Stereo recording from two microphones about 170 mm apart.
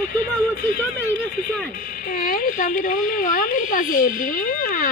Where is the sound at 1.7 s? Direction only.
50° left (ahead or behind).